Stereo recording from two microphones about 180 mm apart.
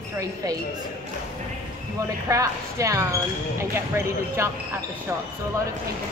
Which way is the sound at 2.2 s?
15° right (ahead or behind).